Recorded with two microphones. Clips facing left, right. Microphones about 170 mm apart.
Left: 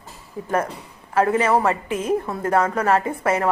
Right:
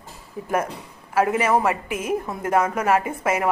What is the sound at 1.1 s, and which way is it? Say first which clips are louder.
A woman's voice: left 1 dB; 10° right (ahead or behind).